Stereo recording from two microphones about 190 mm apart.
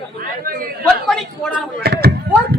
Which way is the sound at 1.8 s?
55° right (ahead or behind).